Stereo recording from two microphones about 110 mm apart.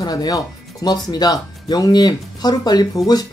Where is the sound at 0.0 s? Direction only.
40° left (ahead or behind).